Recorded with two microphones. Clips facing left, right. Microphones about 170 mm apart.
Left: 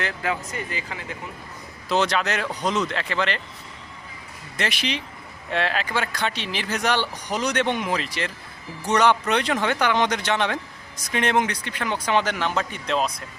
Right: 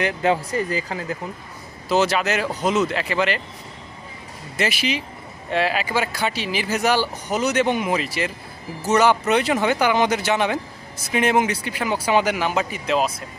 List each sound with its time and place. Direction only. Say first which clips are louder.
0.0 s speech: right 7 dB; 25° right (ahead or behind)
1.9 s speech: right 3 dB; 5° right (ahead or behind)
4.5 s speech: right 4 dB; 5° right (ahead or behind)